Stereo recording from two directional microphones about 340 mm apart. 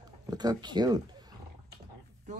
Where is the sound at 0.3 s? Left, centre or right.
Centre.